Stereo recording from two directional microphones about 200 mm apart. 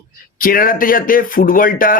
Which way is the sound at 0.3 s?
45° left (ahead or behind).